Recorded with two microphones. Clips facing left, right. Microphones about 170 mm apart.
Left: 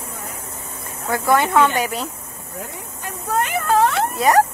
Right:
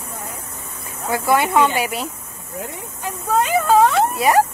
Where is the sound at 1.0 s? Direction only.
15° right (ahead or behind).